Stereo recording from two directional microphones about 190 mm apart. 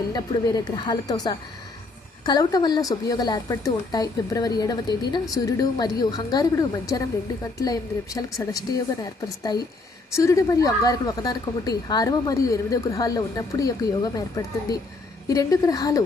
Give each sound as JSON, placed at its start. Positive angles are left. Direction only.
{"t": 0.1, "sound": "speech", "side_deg": 20}